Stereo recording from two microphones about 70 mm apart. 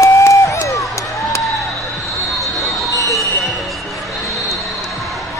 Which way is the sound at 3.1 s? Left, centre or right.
Centre.